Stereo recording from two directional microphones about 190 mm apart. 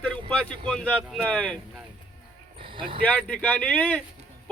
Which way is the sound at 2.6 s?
25° right (ahead or behind).